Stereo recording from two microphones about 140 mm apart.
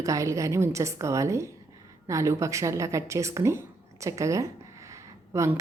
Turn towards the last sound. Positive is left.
turn(degrees=-20)  # may be behind; listen again after turning